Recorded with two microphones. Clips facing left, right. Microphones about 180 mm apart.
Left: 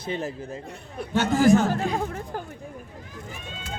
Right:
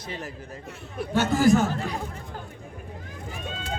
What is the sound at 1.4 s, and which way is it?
Speech, 15° left (ahead or behind).